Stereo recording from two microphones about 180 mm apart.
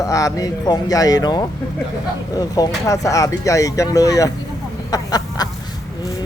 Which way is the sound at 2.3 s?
20° left (ahead or behind).